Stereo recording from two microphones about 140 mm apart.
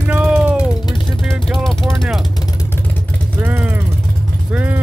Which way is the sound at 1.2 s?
Centre (ahead or behind).